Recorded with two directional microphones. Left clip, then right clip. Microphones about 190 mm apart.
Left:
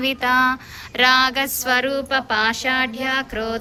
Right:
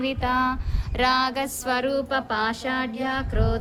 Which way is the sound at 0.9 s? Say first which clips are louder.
Left 6 dB; 5° left (ahead or behind).